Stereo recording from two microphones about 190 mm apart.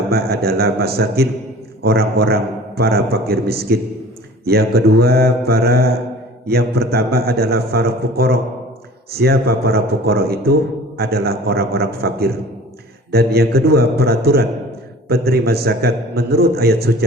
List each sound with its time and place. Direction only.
0.1 s a man's voice: 55° right (ahead or behind)